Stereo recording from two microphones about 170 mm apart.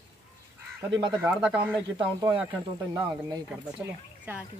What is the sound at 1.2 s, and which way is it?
Speech, 10° right (ahead or behind).